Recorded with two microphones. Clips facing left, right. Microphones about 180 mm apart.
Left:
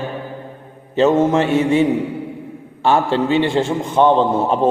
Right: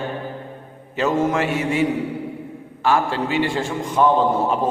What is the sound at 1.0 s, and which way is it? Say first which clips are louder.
Speech: left 6 dB; 25° left (ahead or behind).